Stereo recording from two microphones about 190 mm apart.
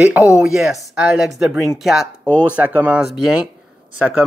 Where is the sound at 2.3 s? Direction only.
10° left (ahead or behind).